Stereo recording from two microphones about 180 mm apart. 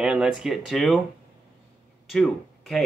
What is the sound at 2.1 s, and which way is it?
Speech, centre (ahead or behind).